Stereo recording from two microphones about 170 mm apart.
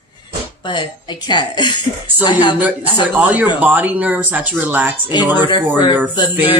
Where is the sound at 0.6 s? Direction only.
25° left (ahead or behind).